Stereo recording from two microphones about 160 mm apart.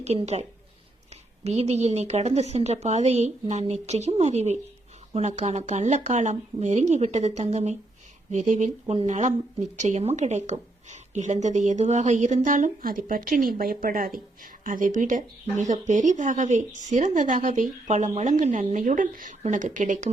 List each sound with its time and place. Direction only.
0.0 s speech: 40° right (ahead or behind)
1.5 s speech: 45° right (ahead or behind)